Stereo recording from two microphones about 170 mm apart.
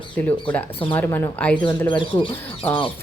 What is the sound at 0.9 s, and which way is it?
Speech, 15° left (ahead or behind).